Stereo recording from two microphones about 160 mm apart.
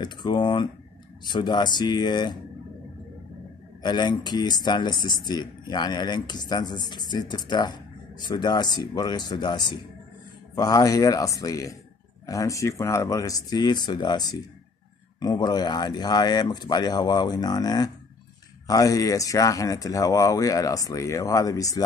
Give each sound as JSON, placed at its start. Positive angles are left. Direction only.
{"t": 0.0, "sound": "speech", "side_deg": 25}
{"t": 3.8, "sound": "speech", "side_deg": 30}